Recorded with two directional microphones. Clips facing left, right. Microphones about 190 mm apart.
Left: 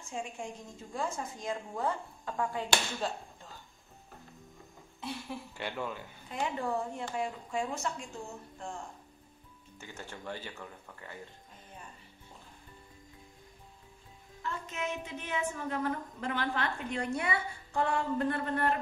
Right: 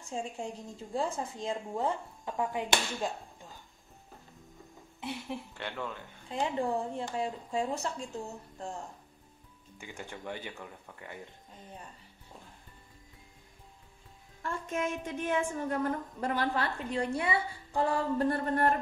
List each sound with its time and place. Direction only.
0.1 s a woman's voice: 35° right (ahead or behind); by 3.1 s 20° right (ahead or behind)
5.5 s speech: 10° left (ahead or behind)
6.2 s a woman's voice: 30° right (ahead or behind)
9.8 s speech: 15° right (ahead or behind)
14.4 s a woman's voice: 45° right (ahead or behind)